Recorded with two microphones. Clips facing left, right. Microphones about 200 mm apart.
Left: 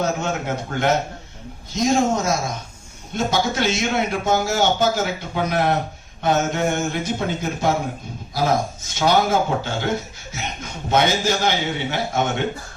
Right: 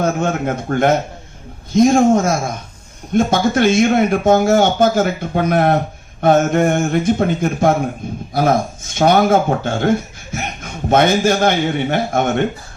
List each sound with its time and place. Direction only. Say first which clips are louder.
0.0 s speech: right 5 dB; 55° right (ahead or behind)